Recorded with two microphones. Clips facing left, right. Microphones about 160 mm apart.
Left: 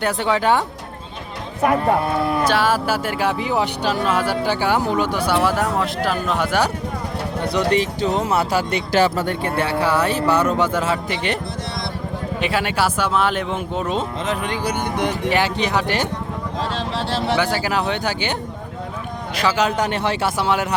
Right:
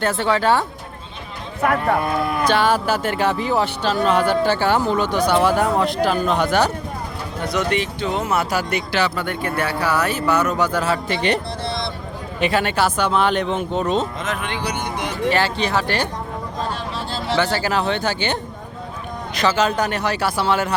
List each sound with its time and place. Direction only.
0.0 s speech: 15° left (ahead or behind)
1.6 s speech: 20° left (ahead or behind)
2.0 s speech: 30° left (ahead or behind)
2.4 s speech: 5° left (ahead or behind)
7.4 s speech: 30° left (ahead or behind)
8.9 s speech: 45° left (ahead or behind); by 11.2 s 20° left (ahead or behind)
12.4 s speech: 5° left (ahead or behind)
14.3 s speech: 40° left (ahead or behind); by 15.1 s 55° left (ahead or behind)
15.3 s speech: 15° left (ahead or behind)
16.6 s a sound: 90° left
17.3 s speech: 10° left (ahead or behind)
19.4 s speech: 15° left (ahead or behind)